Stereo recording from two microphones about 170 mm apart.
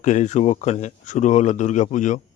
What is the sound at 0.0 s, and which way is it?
Speech, 40° left (ahead or behind).